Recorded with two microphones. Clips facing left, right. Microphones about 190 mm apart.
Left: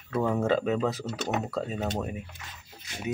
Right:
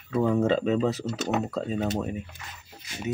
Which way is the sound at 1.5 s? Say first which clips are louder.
Right 3 dB; 5° left (ahead or behind).